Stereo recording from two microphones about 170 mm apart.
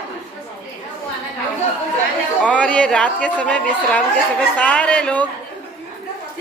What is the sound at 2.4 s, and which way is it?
A woman's voice, 5° left (ahead or behind).